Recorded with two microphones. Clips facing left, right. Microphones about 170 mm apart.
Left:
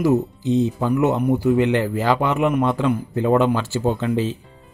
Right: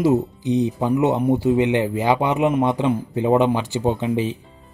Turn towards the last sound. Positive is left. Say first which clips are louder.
# even
turn(degrees=-15)  # may be behind; listen again after turning